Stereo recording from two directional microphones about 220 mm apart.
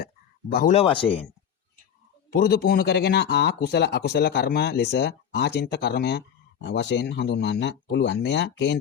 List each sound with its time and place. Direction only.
0.7 s speech: 25° left (ahead or behind)
2.3 s speech: 45° left (ahead or behind)